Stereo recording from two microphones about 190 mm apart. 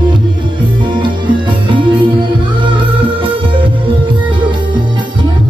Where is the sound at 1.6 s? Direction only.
25° right (ahead or behind).